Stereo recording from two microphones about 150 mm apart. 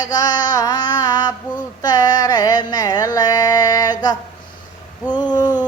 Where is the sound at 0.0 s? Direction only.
25° left (ahead or behind).